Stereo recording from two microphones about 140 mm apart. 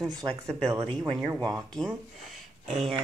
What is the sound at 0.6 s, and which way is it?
Speech, 40° right (ahead or behind).